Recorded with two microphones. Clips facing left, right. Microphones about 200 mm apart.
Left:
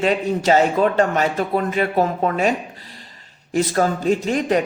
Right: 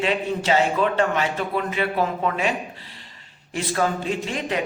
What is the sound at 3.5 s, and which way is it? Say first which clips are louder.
A man's voice: left 5 dB; 40° left (ahead or behind).